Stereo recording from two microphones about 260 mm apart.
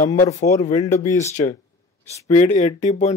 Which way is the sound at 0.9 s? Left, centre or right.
Left.